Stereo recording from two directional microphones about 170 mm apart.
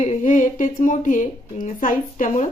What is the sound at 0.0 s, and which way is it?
A woman's voice, 45° left (ahead or behind).